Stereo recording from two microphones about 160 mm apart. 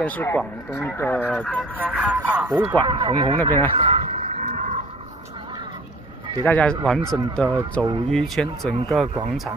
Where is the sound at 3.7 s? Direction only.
35° right (ahead or behind).